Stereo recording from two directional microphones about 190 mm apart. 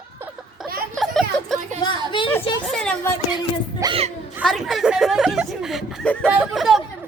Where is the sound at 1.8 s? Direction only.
25° left (ahead or behind).